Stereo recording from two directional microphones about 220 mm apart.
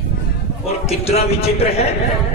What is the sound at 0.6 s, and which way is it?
A man's voice, 30° left (ahead or behind).